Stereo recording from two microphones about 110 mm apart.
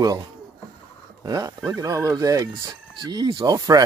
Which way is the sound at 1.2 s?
35° right (ahead or behind).